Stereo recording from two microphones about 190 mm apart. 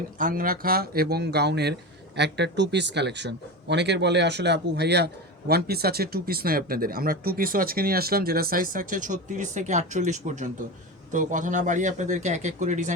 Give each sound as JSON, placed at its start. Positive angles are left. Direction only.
{"t": 0.2, "sound": "speech", "side_deg": -45}